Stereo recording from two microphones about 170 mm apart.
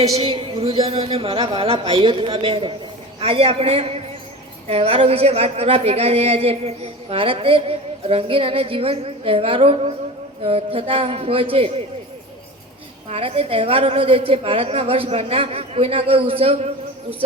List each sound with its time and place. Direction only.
0.1 s speech: 35° right (ahead or behind)
13.1 s speech: 35° right (ahead or behind)